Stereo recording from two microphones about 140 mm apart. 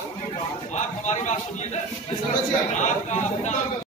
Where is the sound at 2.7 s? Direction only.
60° left (ahead or behind).